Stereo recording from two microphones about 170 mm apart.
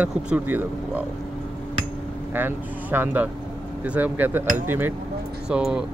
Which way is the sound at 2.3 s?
10° right (ahead or behind).